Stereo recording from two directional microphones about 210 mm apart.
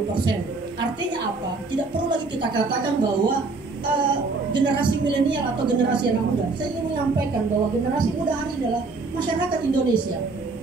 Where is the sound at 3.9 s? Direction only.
20° right (ahead or behind).